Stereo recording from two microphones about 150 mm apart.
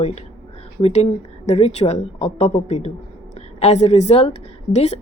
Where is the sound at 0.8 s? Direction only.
45° left (ahead or behind).